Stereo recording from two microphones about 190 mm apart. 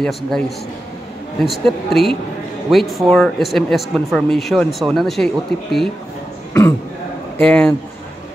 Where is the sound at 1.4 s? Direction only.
Centre (ahead or behind).